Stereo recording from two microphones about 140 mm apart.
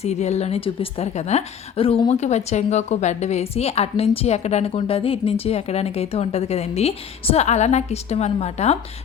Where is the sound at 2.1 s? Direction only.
55° left (ahead or behind).